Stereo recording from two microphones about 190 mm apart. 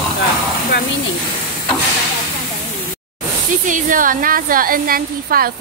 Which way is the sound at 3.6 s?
45° right (ahead or behind).